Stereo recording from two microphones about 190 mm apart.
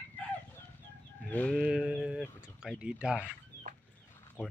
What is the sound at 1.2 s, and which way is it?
Fowl, 5° left (ahead or behind).